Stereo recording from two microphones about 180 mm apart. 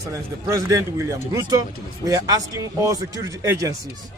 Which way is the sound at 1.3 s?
20° right (ahead or behind).